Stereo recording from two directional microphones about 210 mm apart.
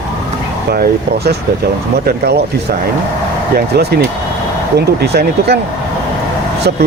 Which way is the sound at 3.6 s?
50° right (ahead or behind).